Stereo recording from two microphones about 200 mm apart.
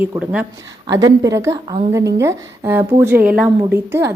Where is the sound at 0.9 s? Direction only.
15° right (ahead or behind).